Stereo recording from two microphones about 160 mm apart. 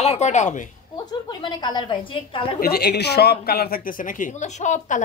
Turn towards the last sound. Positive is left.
turn(degrees=50)  # may be behind; listen again after turning